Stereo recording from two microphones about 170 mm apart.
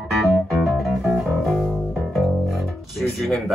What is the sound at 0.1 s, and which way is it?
Music, centre (ahead or behind).